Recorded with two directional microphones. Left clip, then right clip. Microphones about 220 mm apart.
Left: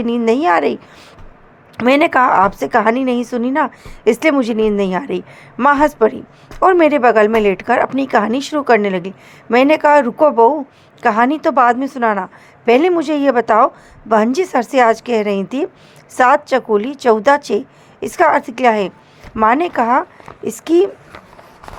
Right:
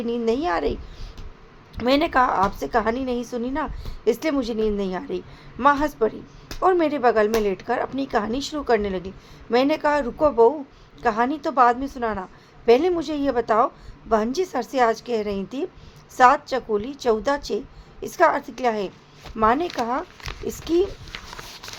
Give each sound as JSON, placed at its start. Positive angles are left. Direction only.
{"t": 0.0, "sound": "a woman's voice", "side_deg": 20}